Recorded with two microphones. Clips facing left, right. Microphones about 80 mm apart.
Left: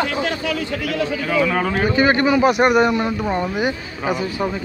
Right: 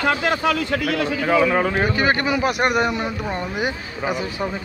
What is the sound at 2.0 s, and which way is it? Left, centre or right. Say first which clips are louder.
A man's voice: left 8 dB; centre.